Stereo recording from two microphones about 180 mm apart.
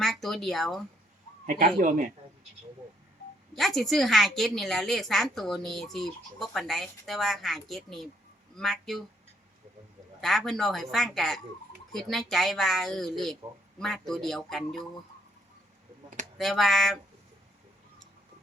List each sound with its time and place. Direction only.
0.0 s speech: centre (ahead or behind)
1.5 s speech: 50° right (ahead or behind)
3.8 s a woman's voice: centre (ahead or behind)
10.2 s a woman's voice: centre (ahead or behind)
16.4 s a woman's voice: centre (ahead or behind)